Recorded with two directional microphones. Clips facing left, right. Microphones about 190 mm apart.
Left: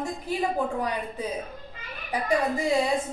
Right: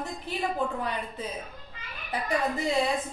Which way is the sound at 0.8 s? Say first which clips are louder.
Left 3 dB; 15° left (ahead or behind).